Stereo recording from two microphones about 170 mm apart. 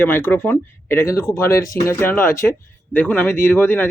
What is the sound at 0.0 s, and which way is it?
Speech, 10° left (ahead or behind).